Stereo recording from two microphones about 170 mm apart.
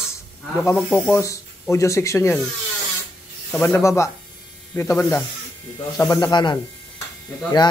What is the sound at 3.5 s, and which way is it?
Speech, 15° left (ahead or behind).